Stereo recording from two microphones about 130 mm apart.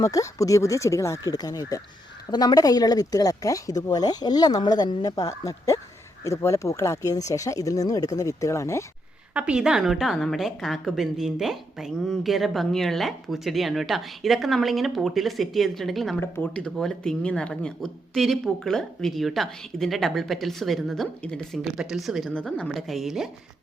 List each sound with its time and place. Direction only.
0.0 s speech: 25° left (ahead or behind)
9.3 s a woman's voice: 10° right (ahead or behind)
16.2 s a woman's voice: 10° left (ahead or behind)